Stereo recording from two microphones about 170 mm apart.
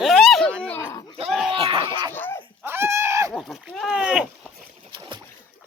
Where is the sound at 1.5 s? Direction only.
30° right (ahead or behind).